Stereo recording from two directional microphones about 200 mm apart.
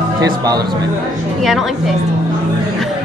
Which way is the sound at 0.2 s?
20° right (ahead or behind).